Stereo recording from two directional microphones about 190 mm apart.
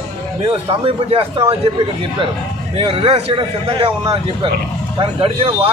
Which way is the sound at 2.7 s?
30° right (ahead or behind).